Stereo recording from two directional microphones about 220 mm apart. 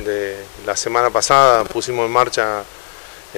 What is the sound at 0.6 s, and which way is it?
Speech, 20° left (ahead or behind).